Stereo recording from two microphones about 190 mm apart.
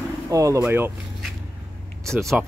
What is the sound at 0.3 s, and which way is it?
Speech, 15° right (ahead or behind).